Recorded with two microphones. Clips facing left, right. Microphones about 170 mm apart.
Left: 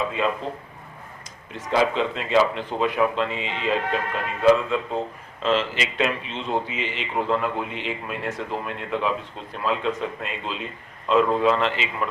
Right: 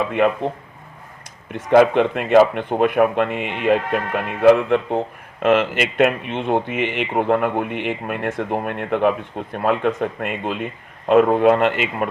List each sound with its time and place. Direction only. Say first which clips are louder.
0.2 s speech: right 8 dB; 60° right (ahead or behind)
1.5 s speech: right 8 dB; 60° right (ahead or behind)